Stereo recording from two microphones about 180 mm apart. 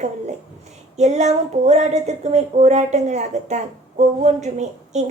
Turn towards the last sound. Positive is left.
turn(degrees=-40)  # may be behind; listen again after turning